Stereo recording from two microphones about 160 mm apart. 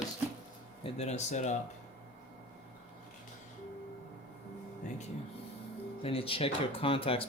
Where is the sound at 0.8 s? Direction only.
45° left (ahead or behind).